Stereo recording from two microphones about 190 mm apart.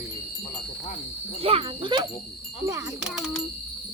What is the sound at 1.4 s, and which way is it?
Speech, 30° right (ahead or behind).